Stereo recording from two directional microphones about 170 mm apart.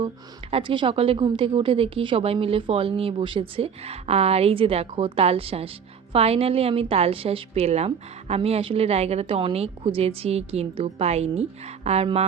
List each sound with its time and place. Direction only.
0.5 s a woman's voice: 30° right (ahead or behind)